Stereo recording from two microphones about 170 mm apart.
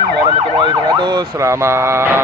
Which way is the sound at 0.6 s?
25° right (ahead or behind).